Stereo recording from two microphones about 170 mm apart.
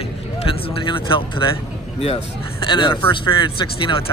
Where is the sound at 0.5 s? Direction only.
30° left (ahead or behind).